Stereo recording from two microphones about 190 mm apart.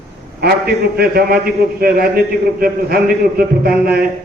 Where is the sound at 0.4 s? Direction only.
55° right (ahead or behind).